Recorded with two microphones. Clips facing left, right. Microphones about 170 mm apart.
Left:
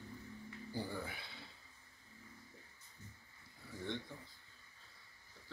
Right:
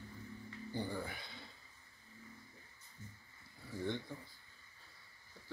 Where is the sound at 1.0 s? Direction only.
5° left (ahead or behind).